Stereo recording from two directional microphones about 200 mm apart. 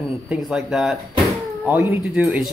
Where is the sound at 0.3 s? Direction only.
Centre (ahead or behind).